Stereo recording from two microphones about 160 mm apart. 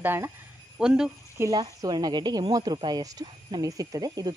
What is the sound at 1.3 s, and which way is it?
A woman's voice, 20° right (ahead or behind).